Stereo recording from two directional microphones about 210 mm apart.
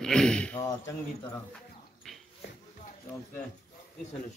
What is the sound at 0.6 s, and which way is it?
Speech, 15° left (ahead or behind).